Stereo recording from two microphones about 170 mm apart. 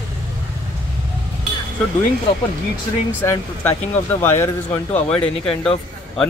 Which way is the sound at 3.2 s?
15° left (ahead or behind).